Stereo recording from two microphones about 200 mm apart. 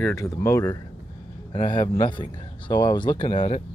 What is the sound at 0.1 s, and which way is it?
Speech, 15° left (ahead or behind).